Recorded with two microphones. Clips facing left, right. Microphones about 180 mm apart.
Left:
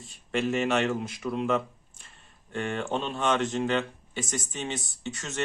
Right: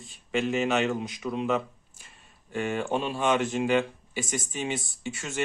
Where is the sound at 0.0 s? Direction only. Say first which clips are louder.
Even; centre (ahead or behind).